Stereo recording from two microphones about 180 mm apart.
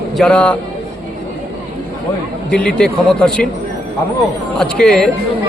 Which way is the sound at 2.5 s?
5° left (ahead or behind).